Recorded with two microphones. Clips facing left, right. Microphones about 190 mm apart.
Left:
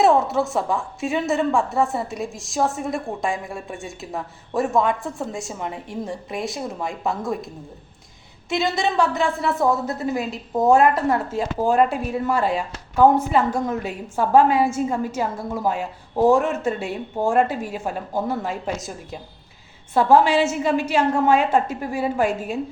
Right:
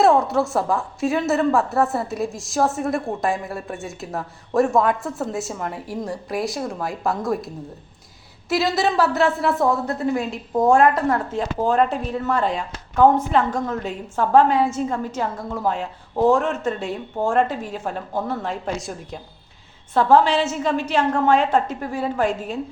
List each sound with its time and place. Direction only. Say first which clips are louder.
0.0 s a woman's voice: right 1 dB; centre (ahead or behind)